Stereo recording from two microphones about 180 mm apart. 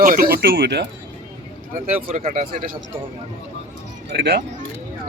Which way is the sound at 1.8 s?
45° right (ahead or behind).